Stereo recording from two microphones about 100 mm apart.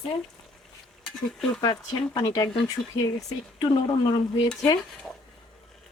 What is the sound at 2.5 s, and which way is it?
Speech, 5° left (ahead or behind).